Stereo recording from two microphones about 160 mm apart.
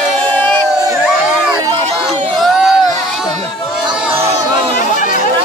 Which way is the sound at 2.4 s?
Centre (ahead or behind).